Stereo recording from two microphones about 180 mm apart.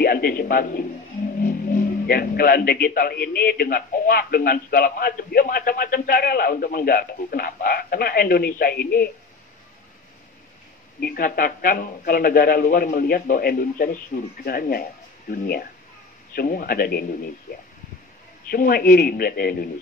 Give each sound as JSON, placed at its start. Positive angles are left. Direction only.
{"t": 0.0, "sound": "a sound", "side_deg": 55}
{"t": 1.4, "sound": "a man's voice", "side_deg": 50}
{"t": 11.0, "sound": "a man's voice", "side_deg": 55}
{"t": 18.5, "sound": "a man's voice", "side_deg": 55}